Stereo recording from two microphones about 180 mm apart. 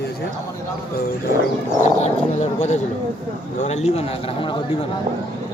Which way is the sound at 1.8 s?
40° left (ahead or behind).